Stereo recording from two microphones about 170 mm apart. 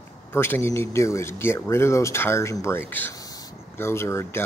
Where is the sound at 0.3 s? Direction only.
15° left (ahead or behind).